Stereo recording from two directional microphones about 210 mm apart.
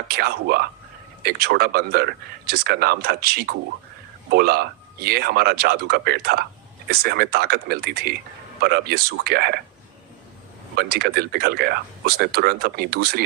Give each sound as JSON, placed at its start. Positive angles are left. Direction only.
{"t": 0.1, "sound": "speech", "side_deg": -50}
{"t": 10.8, "sound": "speech", "side_deg": -50}